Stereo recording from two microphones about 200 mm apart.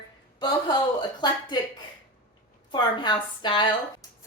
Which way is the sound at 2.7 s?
20° left (ahead or behind).